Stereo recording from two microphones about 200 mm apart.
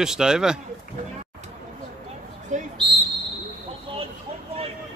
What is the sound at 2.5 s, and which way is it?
Speech, 35° right (ahead or behind).